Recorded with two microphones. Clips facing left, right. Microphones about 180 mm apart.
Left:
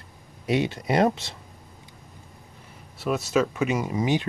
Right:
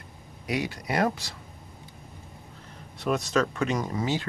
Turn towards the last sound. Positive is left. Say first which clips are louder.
# left 4 dB
turn(degrees=15)  # may be behind; listen again after turning